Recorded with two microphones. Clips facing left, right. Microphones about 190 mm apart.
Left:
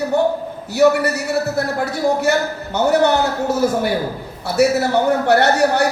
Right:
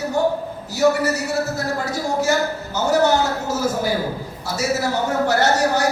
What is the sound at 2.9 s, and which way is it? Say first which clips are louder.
Speech: left 1 dB; 60° left (ahead or behind).